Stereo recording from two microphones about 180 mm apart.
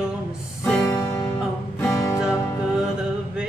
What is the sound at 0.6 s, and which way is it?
Music, 10° left (ahead or behind).